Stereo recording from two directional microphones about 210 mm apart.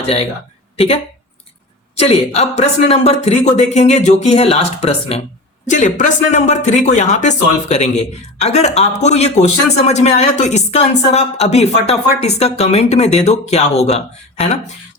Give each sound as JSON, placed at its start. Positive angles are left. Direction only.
{"t": 2.0, "sound": "speech", "side_deg": 30}